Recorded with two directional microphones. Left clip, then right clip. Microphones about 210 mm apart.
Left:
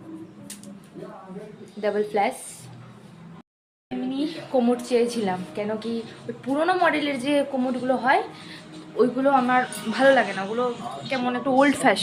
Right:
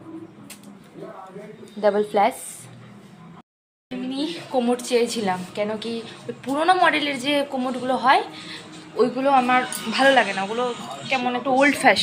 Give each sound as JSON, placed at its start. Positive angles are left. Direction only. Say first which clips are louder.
{"t": 1.8, "sound": "a woman's voice", "louder": "right 4 dB", "side_deg": -5}
{"t": 4.5, "sound": "a woman's voice", "louder": "even", "side_deg": 20}
{"t": 11.1, "sound": "speech", "louder": "right 2 dB", "side_deg": 25}